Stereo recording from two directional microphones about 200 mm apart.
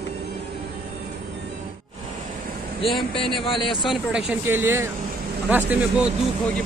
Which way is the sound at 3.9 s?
5° right (ahead or behind).